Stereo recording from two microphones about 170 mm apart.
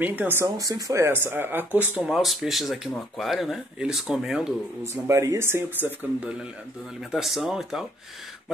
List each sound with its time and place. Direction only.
0.0 s speech: 10° right (ahead or behind)
5.0 s speech: 15° right (ahead or behind)
7.1 s speech: centre (ahead or behind)